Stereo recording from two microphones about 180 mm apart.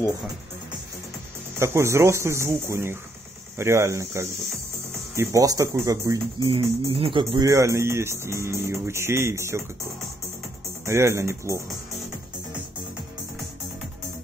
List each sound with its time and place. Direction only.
1.6 s speech: 15° right (ahead or behind)
6.5 s speech: 30° right (ahead or behind); by 9.7 s 15° right (ahead or behind)
10.9 s speech: 15° right (ahead or behind)